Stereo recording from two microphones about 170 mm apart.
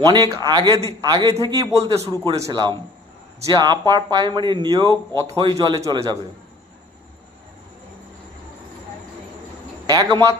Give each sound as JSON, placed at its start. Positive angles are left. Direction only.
{"t": 0.0, "sound": "speech", "side_deg": -25}
{"t": 9.9, "sound": "speech", "side_deg": -25}